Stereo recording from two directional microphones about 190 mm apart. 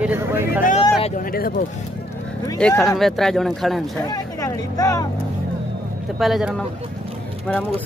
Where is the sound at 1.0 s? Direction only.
45° left (ahead or behind).